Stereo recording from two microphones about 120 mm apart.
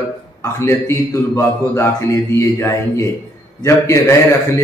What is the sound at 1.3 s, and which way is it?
Mantra, 25° left (ahead or behind).